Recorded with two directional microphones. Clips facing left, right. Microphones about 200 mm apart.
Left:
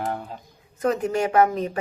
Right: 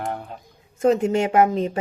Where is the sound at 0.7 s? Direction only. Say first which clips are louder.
Right 4 dB; 25° right (ahead or behind).